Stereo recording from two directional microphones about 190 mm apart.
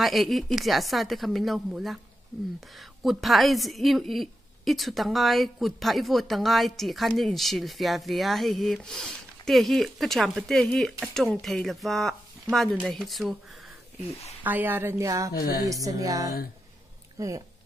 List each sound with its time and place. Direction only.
0.0 s a woman's voice: centre (ahead or behind)
14.4 s a woman's voice: 10° right (ahead or behind)
15.3 s speech: 50° left (ahead or behind)
15.7 s a woman's voice: 20° right (ahead or behind)